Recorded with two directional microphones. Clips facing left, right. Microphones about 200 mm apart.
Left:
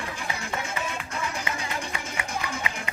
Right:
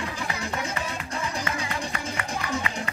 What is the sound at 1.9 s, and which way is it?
Music, 15° left (ahead or behind).